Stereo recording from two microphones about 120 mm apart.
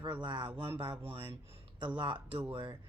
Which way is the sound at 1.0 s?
50° right (ahead or behind).